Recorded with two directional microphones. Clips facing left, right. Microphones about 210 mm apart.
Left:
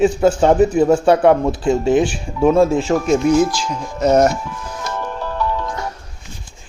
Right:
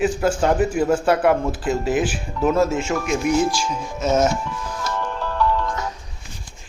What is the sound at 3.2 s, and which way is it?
Speech, 10° right (ahead or behind).